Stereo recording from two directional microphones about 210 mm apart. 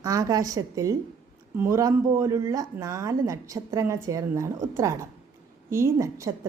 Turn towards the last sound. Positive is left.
turn(degrees=-15)  # may be behind; listen again after turning